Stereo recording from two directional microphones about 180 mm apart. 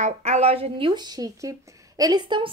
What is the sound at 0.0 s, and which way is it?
Speech, 40° right (ahead or behind).